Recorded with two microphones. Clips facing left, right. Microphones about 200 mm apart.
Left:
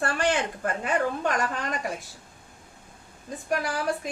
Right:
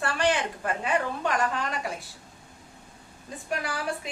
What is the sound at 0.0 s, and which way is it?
A woman's voice, 45° left (ahead or behind).